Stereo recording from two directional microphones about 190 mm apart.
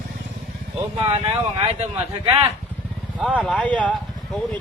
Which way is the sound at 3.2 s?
5° right (ahead or behind).